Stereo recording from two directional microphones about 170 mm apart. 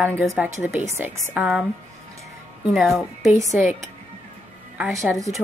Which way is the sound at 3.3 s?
20° right (ahead or behind).